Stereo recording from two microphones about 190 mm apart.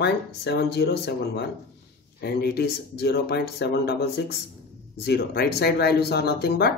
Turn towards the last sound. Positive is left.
turn(degrees=55)  # may be behind; listen again after turning